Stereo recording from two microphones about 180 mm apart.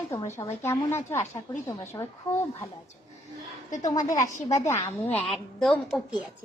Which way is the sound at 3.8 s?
20° left (ahead or behind).